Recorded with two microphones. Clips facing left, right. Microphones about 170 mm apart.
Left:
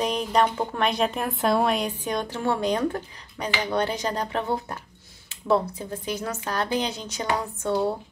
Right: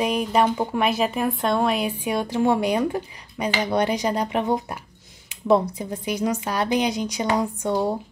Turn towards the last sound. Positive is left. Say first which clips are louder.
# right 2 dB
turn(degrees=-15)  # may be behind; listen again after turning